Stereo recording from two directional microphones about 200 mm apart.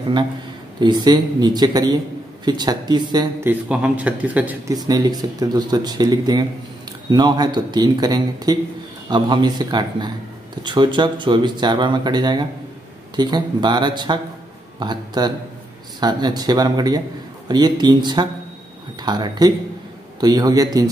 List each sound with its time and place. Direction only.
0.7 s speech: 20° right (ahead or behind)
4.7 s speech: 20° right (ahead or behind)